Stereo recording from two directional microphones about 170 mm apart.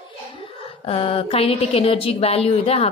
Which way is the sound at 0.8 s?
35° left (ahead or behind).